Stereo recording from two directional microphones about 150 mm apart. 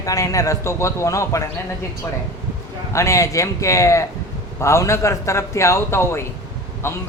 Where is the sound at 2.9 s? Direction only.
20° left (ahead or behind).